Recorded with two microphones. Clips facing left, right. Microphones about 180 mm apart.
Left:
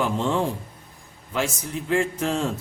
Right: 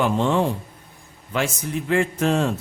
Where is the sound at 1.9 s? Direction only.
60° right (ahead or behind).